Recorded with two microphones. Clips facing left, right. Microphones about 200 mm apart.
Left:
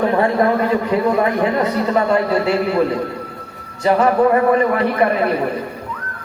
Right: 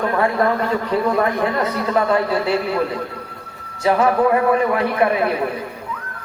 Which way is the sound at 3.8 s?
5° right (ahead or behind).